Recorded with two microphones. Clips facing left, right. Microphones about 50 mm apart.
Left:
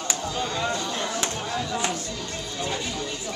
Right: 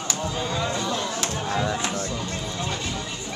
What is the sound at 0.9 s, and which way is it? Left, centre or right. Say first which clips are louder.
Music: even; centre.